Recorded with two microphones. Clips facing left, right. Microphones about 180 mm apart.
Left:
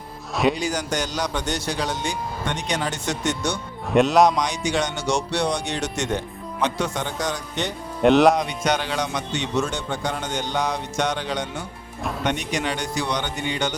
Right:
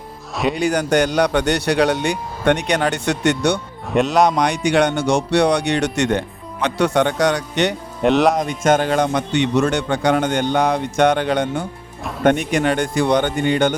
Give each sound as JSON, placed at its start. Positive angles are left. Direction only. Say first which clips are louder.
{"t": 0.5, "sound": "speech", "louder": "right 8 dB", "side_deg": -60}
{"t": 3.8, "sound": "speech", "louder": "right 1 dB", "side_deg": 0}
{"t": 4.4, "sound": "speech", "louder": "right 7 dB", "side_deg": -60}
{"t": 8.0, "sound": "speech", "louder": "even", "side_deg": 0}
{"t": 8.4, "sound": "speech", "louder": "right 7 dB", "side_deg": -45}